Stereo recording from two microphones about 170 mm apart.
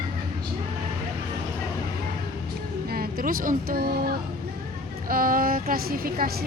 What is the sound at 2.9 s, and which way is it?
A woman's voice, 55° right (ahead or behind).